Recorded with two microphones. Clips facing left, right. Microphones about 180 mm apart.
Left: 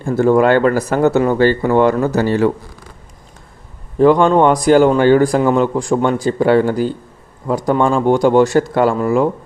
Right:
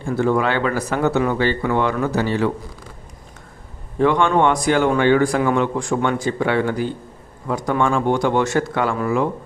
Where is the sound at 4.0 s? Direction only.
35° left (ahead or behind).